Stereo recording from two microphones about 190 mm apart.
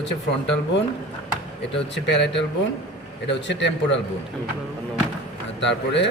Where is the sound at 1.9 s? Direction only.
65° left (ahead or behind).